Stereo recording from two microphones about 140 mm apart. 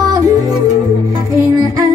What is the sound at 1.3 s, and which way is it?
Music, 20° right (ahead or behind).